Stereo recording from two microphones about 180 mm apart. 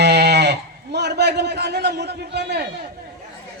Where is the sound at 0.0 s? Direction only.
70° right (ahead or behind).